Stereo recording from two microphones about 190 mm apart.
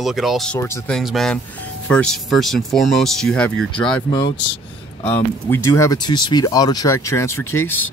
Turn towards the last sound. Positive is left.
turn(degrees=10)  # may be behind; listen again after turning